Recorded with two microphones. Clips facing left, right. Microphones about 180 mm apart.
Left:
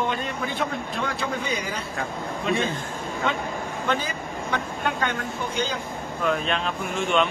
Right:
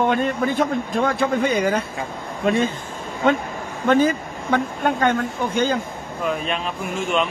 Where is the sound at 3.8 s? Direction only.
50° right (ahead or behind).